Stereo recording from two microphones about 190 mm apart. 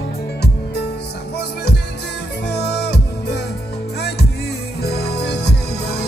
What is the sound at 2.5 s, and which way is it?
Music, 60° left (ahead or behind).